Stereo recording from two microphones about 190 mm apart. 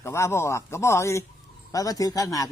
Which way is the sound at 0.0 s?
15° left (ahead or behind).